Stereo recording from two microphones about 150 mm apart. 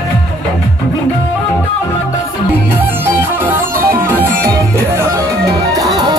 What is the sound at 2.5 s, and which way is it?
Music, 15° right (ahead or behind).